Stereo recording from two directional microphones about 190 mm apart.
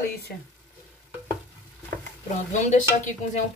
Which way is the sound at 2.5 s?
40° left (ahead or behind).